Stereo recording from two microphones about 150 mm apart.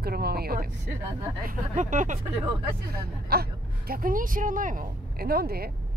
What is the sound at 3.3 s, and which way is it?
Speech, 90° right.